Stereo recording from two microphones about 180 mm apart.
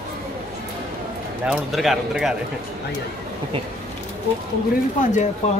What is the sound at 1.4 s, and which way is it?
Speech, centre (ahead or behind).